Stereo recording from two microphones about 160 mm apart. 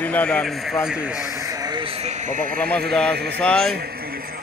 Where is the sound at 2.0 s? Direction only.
50° right (ahead or behind).